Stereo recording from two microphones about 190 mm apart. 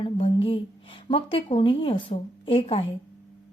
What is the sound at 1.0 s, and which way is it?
Speech, 30° left (ahead or behind).